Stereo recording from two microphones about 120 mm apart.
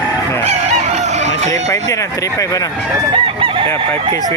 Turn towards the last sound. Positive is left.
turn(degrees=-45)  # may be behind; listen again after turning